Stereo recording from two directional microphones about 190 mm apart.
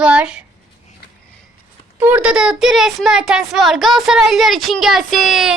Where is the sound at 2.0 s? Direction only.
10° right (ahead or behind).